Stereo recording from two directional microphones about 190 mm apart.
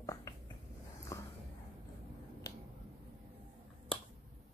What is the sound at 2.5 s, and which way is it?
Finger snapping, 20° left (ahead or behind).